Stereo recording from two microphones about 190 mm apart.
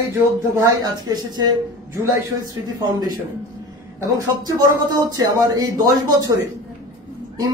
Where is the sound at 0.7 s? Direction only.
20° right (ahead or behind).